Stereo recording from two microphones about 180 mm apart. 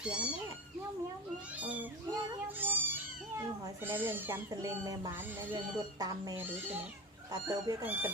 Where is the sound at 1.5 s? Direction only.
10° right (ahead or behind).